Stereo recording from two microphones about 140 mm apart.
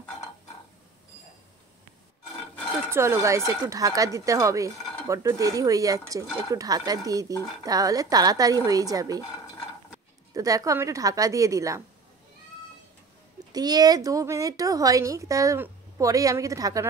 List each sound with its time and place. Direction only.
2.9 s speech: 20° right (ahead or behind)
10.3 s speech: 25° right (ahead or behind)
13.5 s speech: 30° right (ahead or behind)